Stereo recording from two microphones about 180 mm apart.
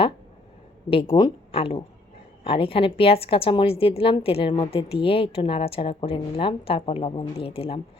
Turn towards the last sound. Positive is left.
turn(degrees=30)  # may be behind; listen again after turning